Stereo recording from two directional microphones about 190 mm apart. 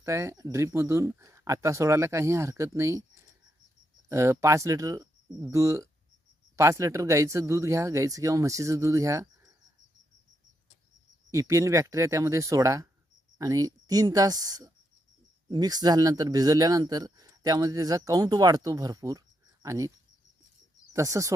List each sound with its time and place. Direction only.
0.0 s speech: 15° right (ahead or behind)
4.1 s speech: 15° right (ahead or behind)
11.3 s speech: 15° right (ahead or behind)
20.9 s speech: 15° right (ahead or behind)